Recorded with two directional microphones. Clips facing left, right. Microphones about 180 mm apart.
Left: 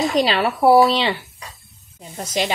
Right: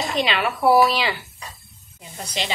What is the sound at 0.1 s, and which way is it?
Speech, 35° left (ahead or behind).